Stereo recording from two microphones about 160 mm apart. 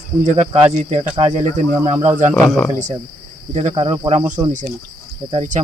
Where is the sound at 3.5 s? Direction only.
35° right (ahead or behind).